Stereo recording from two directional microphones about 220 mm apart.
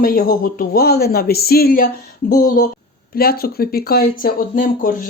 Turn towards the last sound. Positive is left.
turn(degrees=40)  # may be behind; listen again after turning